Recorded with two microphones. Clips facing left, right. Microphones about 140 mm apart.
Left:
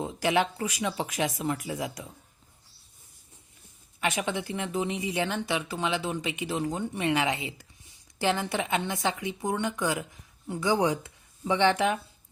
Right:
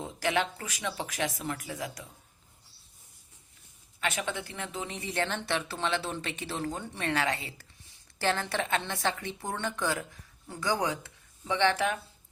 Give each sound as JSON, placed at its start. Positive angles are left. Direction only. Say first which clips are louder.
{"t": 0.0, "sound": "speech", "louder": "left 4 dB", "side_deg": 10}
{"t": 4.0, "sound": "speech", "louder": "left 4 dB", "side_deg": 10}